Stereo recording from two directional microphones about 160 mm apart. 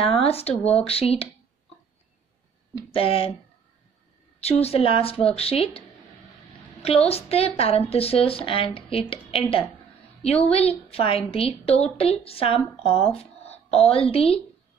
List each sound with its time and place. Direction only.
0.0 s a woman's voice: 35° left (ahead or behind)
2.9 s a woman's voice: 35° left (ahead or behind)
4.4 s a woman's voice: 40° left (ahead or behind)